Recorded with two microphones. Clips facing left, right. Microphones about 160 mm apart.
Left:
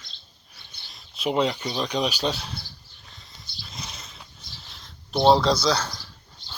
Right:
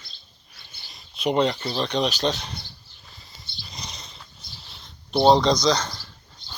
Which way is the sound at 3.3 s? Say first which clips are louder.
Left 1 dB; centre (ahead or behind).